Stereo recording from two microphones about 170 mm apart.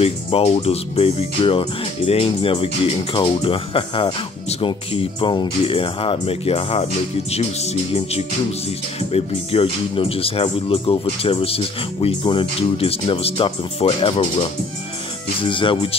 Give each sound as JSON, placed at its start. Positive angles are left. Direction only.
{"t": 0.0, "sound": "speech", "side_deg": 35}